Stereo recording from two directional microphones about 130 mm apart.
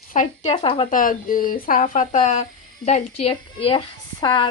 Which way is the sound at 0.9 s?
90° left.